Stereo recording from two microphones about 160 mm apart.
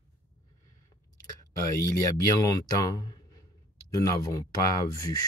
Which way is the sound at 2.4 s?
25° left (ahead or behind).